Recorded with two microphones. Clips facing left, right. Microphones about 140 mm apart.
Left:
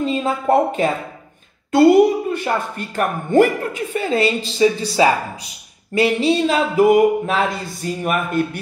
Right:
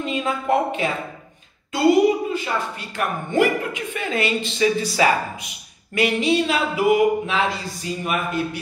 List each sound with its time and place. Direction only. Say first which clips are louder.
0.0 s speech: left 4 dB; 35° left (ahead or behind)
1.7 s a woman's voice: left 5 dB; 55° left (ahead or behind)